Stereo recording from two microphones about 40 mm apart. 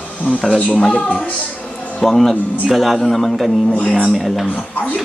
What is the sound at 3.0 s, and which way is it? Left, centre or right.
Speech, centre.